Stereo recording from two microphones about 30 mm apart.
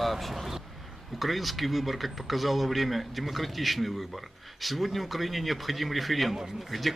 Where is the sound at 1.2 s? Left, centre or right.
Centre.